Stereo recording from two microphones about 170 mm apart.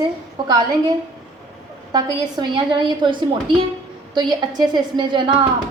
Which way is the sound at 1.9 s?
25° right (ahead or behind).